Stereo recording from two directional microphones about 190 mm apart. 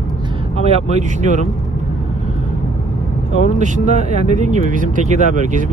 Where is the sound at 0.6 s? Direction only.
35° right (ahead or behind).